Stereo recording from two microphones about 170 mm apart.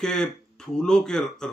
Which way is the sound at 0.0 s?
5° left (ahead or behind).